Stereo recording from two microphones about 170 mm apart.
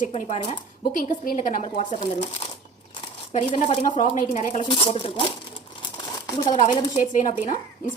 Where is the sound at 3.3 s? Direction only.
40° left (ahead or behind).